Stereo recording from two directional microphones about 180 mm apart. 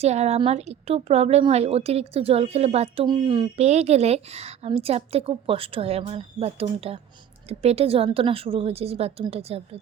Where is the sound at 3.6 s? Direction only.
40° right (ahead or behind).